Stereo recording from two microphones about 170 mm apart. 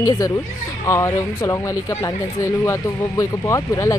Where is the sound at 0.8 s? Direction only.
20° left (ahead or behind).